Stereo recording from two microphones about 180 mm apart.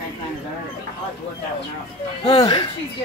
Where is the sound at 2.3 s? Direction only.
20° left (ahead or behind).